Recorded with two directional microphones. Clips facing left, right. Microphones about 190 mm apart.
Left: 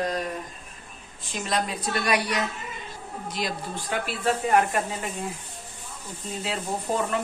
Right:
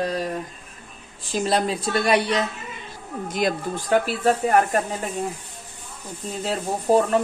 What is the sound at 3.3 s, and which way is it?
Speech, 50° right (ahead or behind).